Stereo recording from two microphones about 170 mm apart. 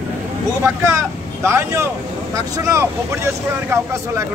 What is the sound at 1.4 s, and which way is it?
Speech, 15° right (ahead or behind).